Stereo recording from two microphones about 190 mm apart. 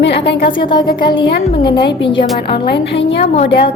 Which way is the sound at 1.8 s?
65° left (ahead or behind).